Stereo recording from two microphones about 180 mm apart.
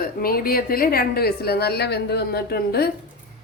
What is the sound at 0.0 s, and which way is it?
A woman's voice, 55° left (ahead or behind).